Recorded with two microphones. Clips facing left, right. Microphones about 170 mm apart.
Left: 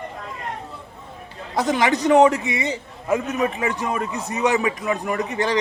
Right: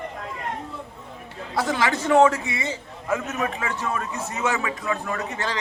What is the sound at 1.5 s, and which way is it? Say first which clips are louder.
A man's voice: left 4 dB; 20° left (ahead or behind).